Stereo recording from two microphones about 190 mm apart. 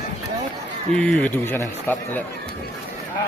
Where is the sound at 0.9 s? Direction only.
5° left (ahead or behind).